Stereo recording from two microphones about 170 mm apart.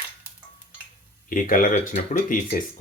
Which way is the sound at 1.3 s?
50° left (ahead or behind).